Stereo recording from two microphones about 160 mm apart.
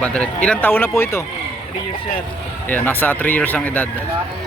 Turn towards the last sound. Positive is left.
turn(degrees=10)  # may be behind; listen again after turning